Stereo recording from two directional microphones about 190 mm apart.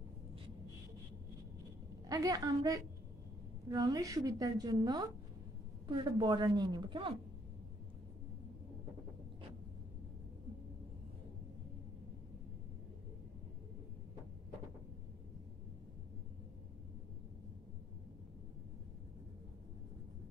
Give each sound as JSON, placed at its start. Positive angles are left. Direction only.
{"t": 2.0, "sound": "a woman's voice", "side_deg": -20}